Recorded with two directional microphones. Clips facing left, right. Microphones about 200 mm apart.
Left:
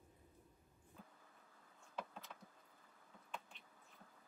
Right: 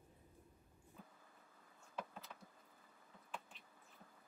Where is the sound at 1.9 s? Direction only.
Centre (ahead or behind).